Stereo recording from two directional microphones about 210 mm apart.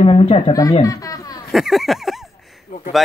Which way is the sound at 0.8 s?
15° left (ahead or behind).